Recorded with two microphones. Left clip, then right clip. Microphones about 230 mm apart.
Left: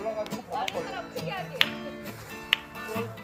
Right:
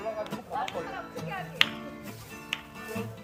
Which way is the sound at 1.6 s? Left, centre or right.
Left.